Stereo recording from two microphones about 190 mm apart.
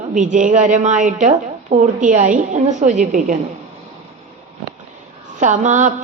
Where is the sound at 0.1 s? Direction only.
40° right (ahead or behind).